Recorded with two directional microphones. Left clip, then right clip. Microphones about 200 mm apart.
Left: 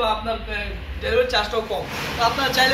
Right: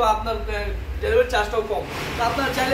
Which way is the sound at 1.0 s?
35° right (ahead or behind).